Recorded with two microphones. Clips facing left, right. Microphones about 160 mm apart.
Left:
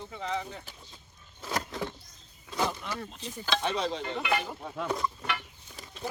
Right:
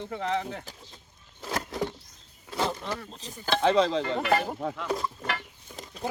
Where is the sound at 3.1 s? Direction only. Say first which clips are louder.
Left 1 dB; 35° right (ahead or behind).